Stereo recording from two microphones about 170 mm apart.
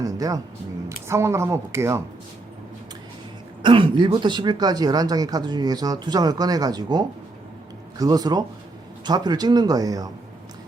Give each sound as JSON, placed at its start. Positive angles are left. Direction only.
{"t": 0.0, "sound": "a sound", "side_deg": -20}
{"t": 0.9, "sound": "speech", "side_deg": -15}
{"t": 3.6, "sound": "speech", "side_deg": -30}